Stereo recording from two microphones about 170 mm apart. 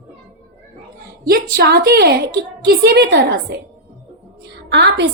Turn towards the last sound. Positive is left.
turn(degrees=-85)